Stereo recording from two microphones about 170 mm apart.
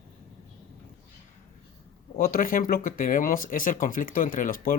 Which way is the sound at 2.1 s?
55° left (ahead or behind).